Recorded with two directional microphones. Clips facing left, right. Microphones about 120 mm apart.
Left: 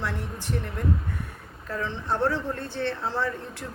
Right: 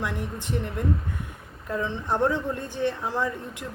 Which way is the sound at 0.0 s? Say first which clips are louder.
Right 1 dB; 15° right (ahead or behind).